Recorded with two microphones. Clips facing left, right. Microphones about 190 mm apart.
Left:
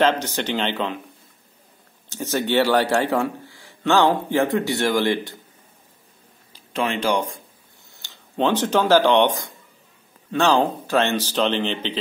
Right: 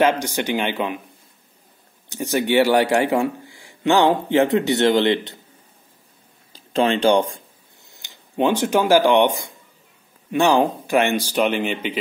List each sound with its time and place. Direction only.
0.0 s a man's voice: 10° right (ahead or behind)
2.0 s a man's voice: 15° right (ahead or behind)
6.7 s speech: 30° right (ahead or behind)
7.9 s a man's voice: 15° right (ahead or behind)